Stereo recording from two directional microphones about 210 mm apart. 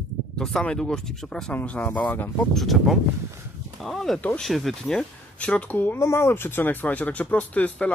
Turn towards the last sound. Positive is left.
turn(degrees=5)  # may be behind; listen again after turning